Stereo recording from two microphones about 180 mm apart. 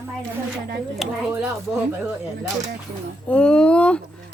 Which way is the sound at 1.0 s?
Centre (ahead or behind).